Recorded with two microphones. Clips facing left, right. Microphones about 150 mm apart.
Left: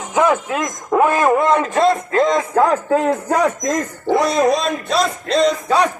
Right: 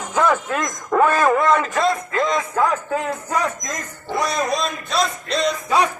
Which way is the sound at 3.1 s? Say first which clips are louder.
Left 6 dB; 65° left (ahead or behind).